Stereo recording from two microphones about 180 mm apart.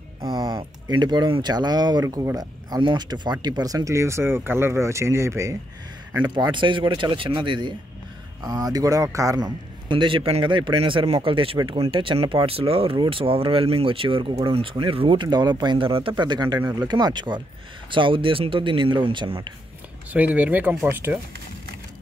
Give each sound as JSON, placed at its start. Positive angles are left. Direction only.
{"t": 0.2, "sound": "a man's voice", "side_deg": -25}
{"t": 20.1, "sound": "speech", "side_deg": -10}